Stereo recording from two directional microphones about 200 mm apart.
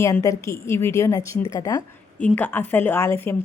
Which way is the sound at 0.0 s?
15° left (ahead or behind).